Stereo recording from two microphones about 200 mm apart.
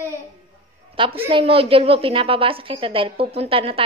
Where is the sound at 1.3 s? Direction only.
30° right (ahead or behind).